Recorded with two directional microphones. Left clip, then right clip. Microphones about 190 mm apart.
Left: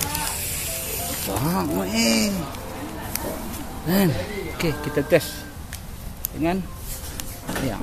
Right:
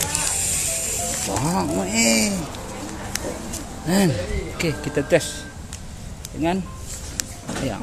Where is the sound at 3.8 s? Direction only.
5° right (ahead or behind).